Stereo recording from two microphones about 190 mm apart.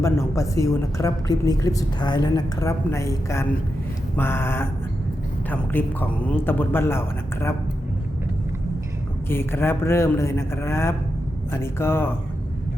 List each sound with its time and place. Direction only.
0.0 s a woman's voice: 15° left (ahead or behind)
9.3 s a woman's voice: 10° left (ahead or behind)